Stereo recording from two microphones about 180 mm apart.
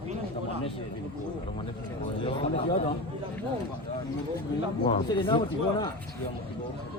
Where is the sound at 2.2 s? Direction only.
30° left (ahead or behind).